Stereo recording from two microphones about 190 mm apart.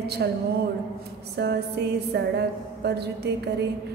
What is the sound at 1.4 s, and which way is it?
A woman's voice, 60° right (ahead or behind).